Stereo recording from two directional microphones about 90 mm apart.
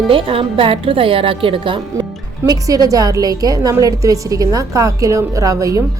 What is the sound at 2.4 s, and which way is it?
Speech, 40° right (ahead or behind).